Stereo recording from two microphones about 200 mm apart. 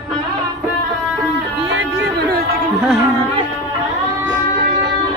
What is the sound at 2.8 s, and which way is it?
Carnatic music, 10° right (ahead or behind).